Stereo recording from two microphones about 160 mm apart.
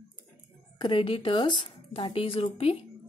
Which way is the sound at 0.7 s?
30° left (ahead or behind).